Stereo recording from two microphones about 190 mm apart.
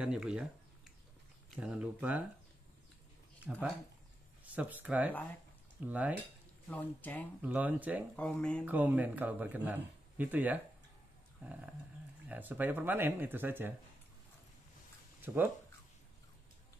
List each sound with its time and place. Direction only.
0.0 s speech: 5° right (ahead or behind)
1.5 s a man's voice: 5° right (ahead or behind)
3.5 s a man's voice: 5° right (ahead or behind)
6.7 s speech: 10° left (ahead or behind)
7.4 s a man's voice: 10° right (ahead or behind)
8.2 s speech: 5° left (ahead or behind)
8.6 s a man's voice: 10° right (ahead or behind)
11.4 s dog: 10° right (ahead or behind)
12.3 s a man's voice: 10° right (ahead or behind)